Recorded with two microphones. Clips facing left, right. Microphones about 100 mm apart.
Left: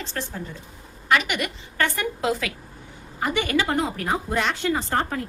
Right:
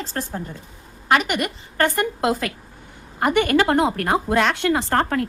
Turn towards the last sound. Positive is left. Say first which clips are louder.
# right 5 dB
turn(degrees=-65)  # may be behind; listen again after turning